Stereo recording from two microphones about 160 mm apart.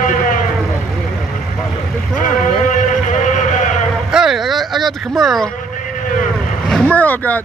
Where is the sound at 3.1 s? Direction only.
50° left (ahead or behind).